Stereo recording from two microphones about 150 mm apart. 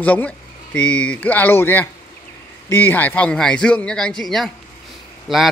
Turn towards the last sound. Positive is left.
turn(degrees=0)  # may be behind; listen again after turning